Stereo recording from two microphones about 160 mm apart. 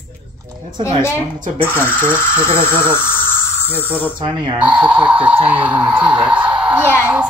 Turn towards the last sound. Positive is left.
turn(degrees=-10)  # may be behind; listen again after turning